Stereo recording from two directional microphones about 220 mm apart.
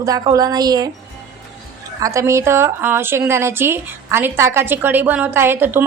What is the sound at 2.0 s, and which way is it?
A woman's voice, 15° right (ahead or behind).